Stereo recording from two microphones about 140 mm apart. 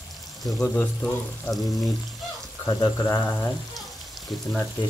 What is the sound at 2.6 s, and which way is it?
Speech, 15° left (ahead or behind).